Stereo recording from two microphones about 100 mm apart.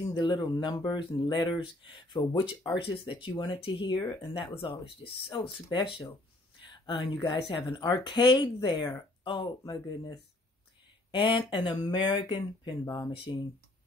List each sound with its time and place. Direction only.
0.0 s speech: 50° left (ahead or behind)